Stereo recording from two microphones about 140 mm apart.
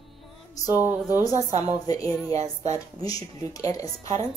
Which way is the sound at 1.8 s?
25° left (ahead or behind).